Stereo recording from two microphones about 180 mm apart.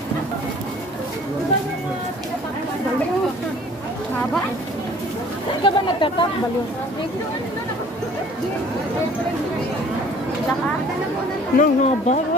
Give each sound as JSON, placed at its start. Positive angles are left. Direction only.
{"t": 5.6, "sound": "speech", "side_deg": 25}
{"t": 11.5, "sound": "speech", "side_deg": 45}